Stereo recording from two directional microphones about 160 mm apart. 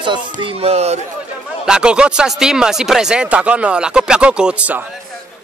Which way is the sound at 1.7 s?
5° right (ahead or behind).